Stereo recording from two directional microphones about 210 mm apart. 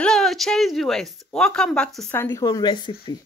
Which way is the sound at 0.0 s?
Centre (ahead or behind).